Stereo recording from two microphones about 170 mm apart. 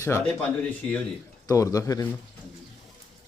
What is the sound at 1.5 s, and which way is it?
Speech, 20° left (ahead or behind).